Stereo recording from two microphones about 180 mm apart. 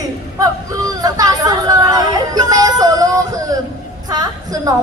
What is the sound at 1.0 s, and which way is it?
A woman's voice, 20° right (ahead or behind).